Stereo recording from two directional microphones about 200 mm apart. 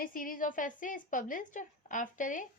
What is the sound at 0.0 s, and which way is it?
A woman's voice, 45° left (ahead or behind).